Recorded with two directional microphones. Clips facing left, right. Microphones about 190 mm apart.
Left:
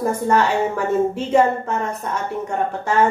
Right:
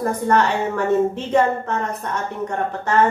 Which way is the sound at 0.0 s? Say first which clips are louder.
Even; 10° left (ahead or behind).